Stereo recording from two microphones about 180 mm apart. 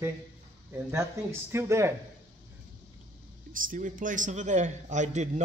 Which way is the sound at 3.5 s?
50° right (ahead or behind).